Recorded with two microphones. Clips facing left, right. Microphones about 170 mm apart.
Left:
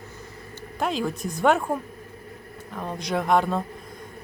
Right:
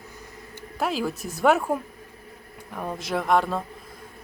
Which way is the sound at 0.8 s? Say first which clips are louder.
Even; 5° right (ahead or behind).